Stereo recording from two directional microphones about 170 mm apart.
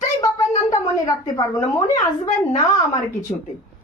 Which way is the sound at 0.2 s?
20° left (ahead or behind).